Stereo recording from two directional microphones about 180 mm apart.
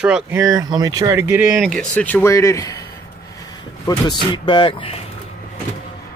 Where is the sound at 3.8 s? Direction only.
25° left (ahead or behind).